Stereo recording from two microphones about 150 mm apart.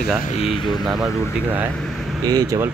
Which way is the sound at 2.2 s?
25° right (ahead or behind).